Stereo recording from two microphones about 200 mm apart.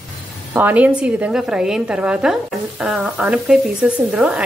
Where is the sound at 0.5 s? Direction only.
10° right (ahead or behind).